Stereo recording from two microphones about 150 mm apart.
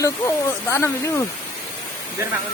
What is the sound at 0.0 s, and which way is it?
Speech, 15° left (ahead or behind).